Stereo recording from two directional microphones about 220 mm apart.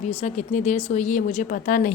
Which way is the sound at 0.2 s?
35° left (ahead or behind).